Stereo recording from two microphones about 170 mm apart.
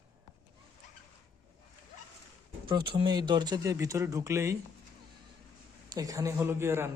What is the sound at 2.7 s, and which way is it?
Speech, 30° right (ahead or behind).